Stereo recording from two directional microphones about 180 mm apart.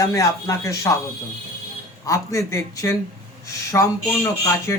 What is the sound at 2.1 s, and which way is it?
Speech, 15° left (ahead or behind).